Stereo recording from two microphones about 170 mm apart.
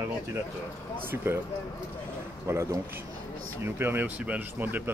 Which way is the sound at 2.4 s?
15° right (ahead or behind).